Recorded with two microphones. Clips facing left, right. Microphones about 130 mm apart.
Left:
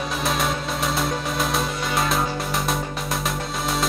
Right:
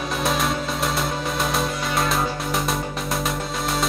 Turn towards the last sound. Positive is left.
turn(degrees=0)  # may be behind; listen again after turning